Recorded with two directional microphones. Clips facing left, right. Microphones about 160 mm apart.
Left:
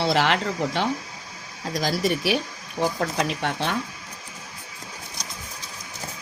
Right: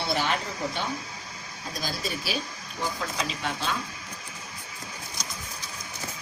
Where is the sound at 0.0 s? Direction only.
85° left.